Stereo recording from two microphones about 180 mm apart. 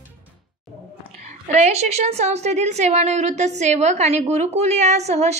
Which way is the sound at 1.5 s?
40° right (ahead or behind).